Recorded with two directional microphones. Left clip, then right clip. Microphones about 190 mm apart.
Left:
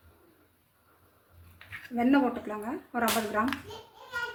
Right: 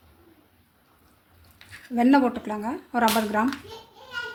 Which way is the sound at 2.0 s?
60° right (ahead or behind).